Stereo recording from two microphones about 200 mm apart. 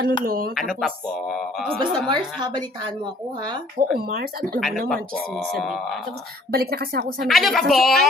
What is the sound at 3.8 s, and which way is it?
Speech, 40° right (ahead or behind).